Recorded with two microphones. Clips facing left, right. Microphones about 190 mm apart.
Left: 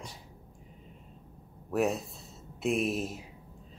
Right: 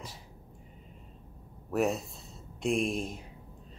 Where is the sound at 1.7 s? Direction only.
Centre (ahead or behind).